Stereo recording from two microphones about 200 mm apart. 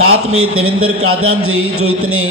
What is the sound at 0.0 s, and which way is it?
A man's voice, 90° right.